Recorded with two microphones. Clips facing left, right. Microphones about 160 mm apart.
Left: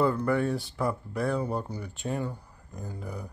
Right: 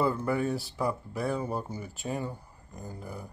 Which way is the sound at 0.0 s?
5° right (ahead or behind).